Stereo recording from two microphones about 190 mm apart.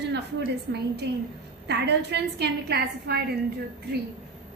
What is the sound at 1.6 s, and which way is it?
A woman's voice, 60° right (ahead or behind).